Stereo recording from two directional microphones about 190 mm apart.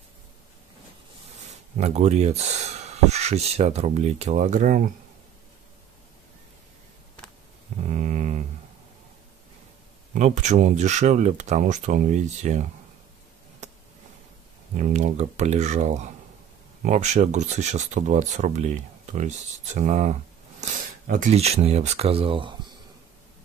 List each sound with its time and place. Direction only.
1.8 s speech: 35° right (ahead or behind)
7.9 s mantra: 40° right (ahead or behind)
10.1 s speech: 40° right (ahead or behind)
14.8 s speech: 40° right (ahead or behind)